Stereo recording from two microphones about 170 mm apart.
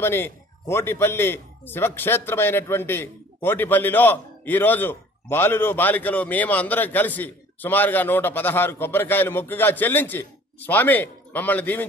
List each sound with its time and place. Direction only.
0.0 s a man's voice: 15° left (ahead or behind)